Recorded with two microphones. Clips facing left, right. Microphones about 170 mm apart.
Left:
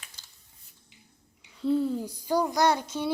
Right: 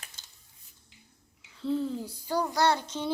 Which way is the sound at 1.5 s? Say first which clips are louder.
Left 4 dB; 10° left (ahead or behind).